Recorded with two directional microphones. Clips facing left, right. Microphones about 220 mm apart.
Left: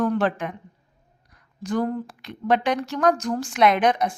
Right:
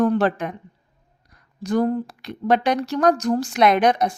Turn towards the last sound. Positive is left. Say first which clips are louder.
# right 2 dB
turn(degrees=-40)  # may be behind; listen again after turning